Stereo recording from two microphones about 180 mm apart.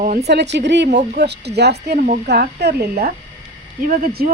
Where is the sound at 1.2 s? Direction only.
70° right (ahead or behind).